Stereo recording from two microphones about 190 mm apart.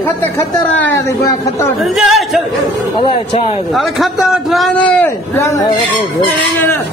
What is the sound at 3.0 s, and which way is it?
Speech, 30° left (ahead or behind).